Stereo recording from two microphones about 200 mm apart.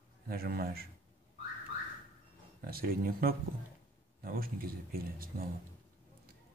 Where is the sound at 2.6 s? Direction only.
50° right (ahead or behind).